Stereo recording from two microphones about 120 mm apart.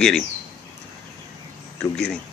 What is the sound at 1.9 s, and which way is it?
Speech, 5° left (ahead or behind).